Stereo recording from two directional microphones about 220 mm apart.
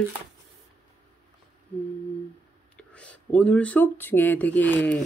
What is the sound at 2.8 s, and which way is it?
Speech, 5° left (ahead or behind).